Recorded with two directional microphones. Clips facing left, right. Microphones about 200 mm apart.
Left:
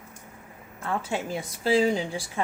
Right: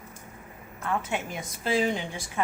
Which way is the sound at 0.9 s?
30° left (ahead or behind).